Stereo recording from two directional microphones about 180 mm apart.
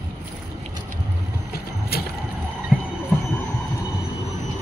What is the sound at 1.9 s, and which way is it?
Vehicle, 60° left (ahead or behind).